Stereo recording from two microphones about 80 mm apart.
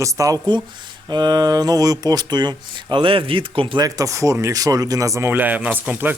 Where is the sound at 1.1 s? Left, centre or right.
Right.